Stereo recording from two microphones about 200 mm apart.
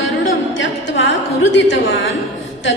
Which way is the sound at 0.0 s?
70° left (ahead or behind).